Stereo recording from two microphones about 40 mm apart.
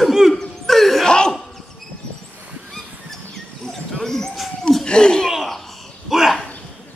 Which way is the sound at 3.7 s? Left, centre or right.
Centre.